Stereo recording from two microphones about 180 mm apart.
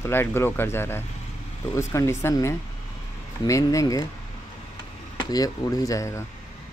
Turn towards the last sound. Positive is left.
turn(degrees=15)  # may be behind; listen again after turning